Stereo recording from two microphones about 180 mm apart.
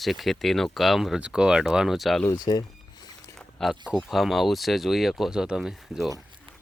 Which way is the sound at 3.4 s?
Centre (ahead or behind).